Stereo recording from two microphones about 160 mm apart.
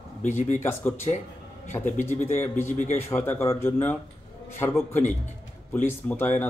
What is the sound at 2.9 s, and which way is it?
Speech, 15° left (ahead or behind).